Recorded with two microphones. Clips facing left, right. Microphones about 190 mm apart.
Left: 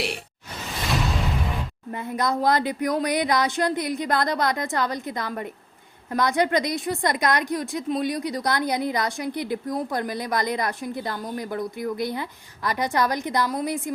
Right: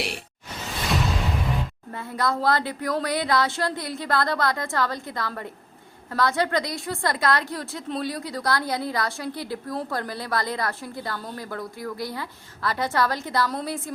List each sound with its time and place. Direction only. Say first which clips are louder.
1.9 s a woman's voice: left 2 dB; 20° left (ahead or behind)